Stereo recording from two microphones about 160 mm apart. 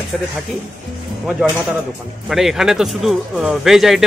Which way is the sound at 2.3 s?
Centre (ahead or behind).